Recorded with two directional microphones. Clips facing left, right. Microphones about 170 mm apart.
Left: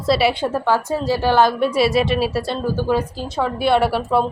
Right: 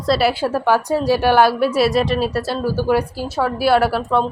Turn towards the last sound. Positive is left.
turn(degrees=5)  # may be behind; listen again after turning